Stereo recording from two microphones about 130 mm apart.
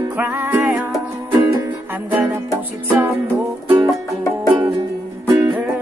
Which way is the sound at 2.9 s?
15° right (ahead or behind).